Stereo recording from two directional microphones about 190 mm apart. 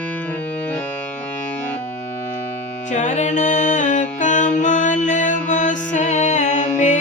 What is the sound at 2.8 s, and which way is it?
Music, 40° left (ahead or behind).